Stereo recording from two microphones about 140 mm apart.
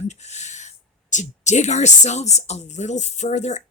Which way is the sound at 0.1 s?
55° left (ahead or behind).